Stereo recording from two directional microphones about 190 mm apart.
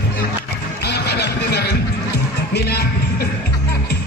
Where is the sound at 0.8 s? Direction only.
60° left (ahead or behind).